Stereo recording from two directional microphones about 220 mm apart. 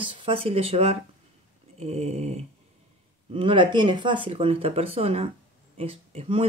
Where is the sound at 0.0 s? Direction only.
25° right (ahead or behind).